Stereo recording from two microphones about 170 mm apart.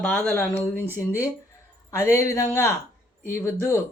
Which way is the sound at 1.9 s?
15° left (ahead or behind).